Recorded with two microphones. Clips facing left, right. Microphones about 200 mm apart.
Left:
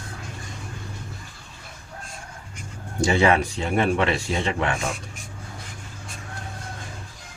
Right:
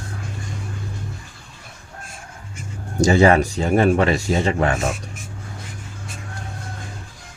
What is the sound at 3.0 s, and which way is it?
Speech, 40° right (ahead or behind).